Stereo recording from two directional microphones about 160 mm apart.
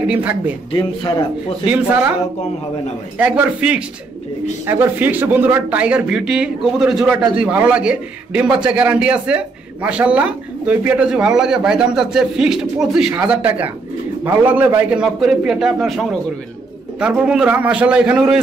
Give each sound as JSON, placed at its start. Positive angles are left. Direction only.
{"t": 0.1, "sound": "a man's voice", "side_deg": -10}
{"t": 0.7, "sound": "a man's voice", "side_deg": 30}
{"t": 3.2, "sound": "a man's voice", "side_deg": -10}